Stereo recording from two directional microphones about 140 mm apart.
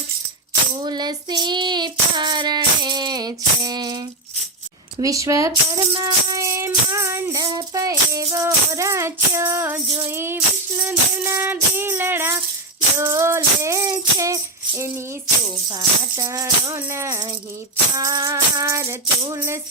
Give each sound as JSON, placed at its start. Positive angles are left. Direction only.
{"t": 0.8, "sound": "child singing", "side_deg": -30}
{"t": 4.9, "sound": "music", "side_deg": -25}